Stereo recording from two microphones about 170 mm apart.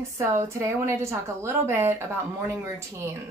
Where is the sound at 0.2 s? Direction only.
15° right (ahead or behind).